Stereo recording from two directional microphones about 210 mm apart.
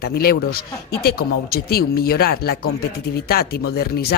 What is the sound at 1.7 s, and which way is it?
Speech, 45° left (ahead or behind).